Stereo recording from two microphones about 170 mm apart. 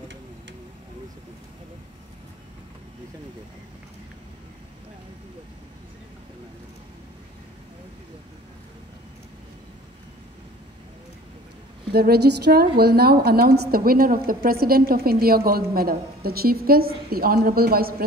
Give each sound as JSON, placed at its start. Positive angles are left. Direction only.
{"t": 11.9, "sound": "a woman's voice", "side_deg": -70}